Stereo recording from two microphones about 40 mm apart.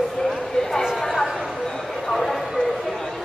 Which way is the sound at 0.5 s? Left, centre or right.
Centre.